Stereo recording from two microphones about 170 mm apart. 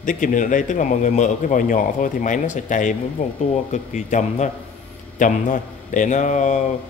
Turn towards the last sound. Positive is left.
turn(degrees=45)  # may be behind; listen again after turning